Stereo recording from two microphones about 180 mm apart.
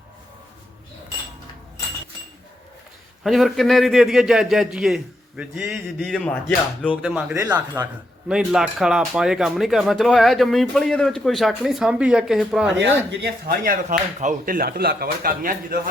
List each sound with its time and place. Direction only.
3.2 s a man's voice: centre (ahead or behind)
8.3 s speech: 5° right (ahead or behind)
12.8 s speech: 75° right (ahead or behind)
13.7 s speech: 45° right (ahead or behind)